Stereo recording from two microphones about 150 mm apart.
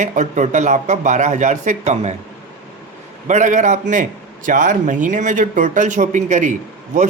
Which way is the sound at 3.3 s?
55° right (ahead or behind).